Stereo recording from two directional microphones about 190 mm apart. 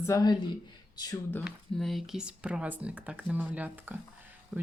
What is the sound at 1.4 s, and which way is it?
Speech, centre (ahead or behind).